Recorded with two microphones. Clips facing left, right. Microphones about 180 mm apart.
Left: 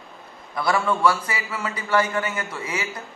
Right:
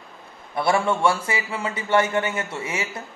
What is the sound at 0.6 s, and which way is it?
Speech, 25° right (ahead or behind).